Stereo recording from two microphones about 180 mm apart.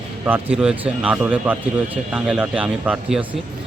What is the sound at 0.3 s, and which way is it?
A man's voice, 10° right (ahead or behind).